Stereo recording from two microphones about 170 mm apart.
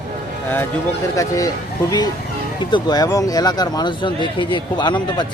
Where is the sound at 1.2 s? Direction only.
20° left (ahead or behind).